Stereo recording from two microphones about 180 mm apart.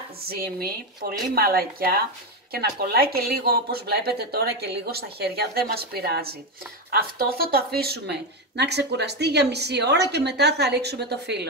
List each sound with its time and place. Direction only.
0.2 s speech: 55° right (ahead or behind)